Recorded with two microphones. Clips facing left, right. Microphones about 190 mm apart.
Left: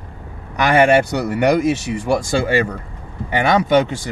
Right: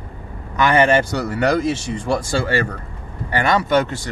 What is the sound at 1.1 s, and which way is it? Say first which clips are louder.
Speech: left 3 dB; 15° left (ahead or behind).